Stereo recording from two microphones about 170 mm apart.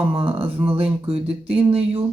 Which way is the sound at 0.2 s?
35° right (ahead or behind).